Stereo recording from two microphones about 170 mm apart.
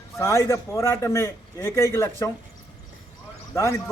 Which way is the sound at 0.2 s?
15° left (ahead or behind).